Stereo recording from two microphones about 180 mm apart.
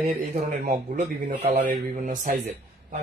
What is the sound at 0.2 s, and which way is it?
Speech, 45° right (ahead or behind).